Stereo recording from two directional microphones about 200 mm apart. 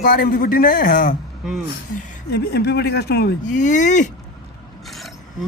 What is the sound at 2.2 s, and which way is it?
A man's voice, 55° left (ahead or behind).